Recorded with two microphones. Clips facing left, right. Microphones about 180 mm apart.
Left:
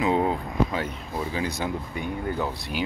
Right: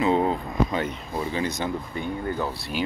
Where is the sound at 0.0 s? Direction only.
5° left (ahead or behind).